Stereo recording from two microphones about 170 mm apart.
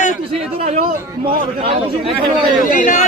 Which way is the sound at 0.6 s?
45° right (ahead or behind).